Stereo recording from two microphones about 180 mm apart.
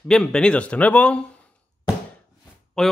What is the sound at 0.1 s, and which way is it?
Speech, 5° left (ahead or behind).